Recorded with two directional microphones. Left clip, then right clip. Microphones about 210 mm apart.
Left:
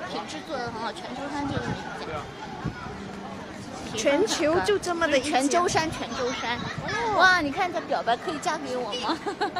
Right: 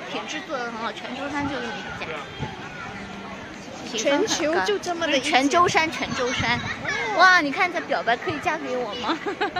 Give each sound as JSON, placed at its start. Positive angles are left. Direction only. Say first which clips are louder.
{"t": 4.0, "sound": "speech", "louder": "right 1 dB", "side_deg": 10}
{"t": 5.3, "sound": "speech", "louder": "right 4 dB", "side_deg": -35}
{"t": 6.3, "sound": "speech", "louder": "right 5 dB", "side_deg": -45}